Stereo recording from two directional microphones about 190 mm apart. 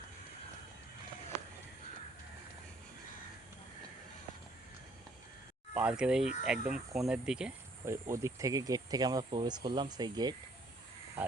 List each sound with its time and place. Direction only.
5.7 s speech: 5° right (ahead or behind)
8.1 s speech: 15° right (ahead or behind)